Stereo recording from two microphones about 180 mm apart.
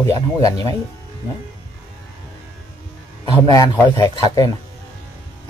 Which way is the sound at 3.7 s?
20° left (ahead or behind).